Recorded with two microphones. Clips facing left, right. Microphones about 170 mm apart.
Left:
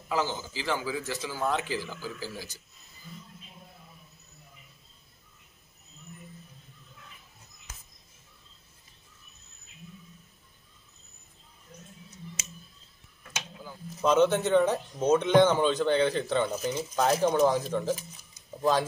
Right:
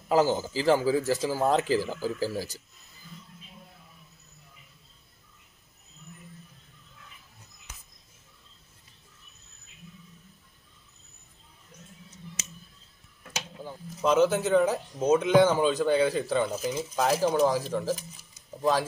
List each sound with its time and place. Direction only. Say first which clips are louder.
0.1 s speech: right 7 dB; 40° right (ahead or behind)
13.6 s a sound: right 5 dB; 25° right (ahead or behind)
14.0 s speech: even; 5° right (ahead or behind)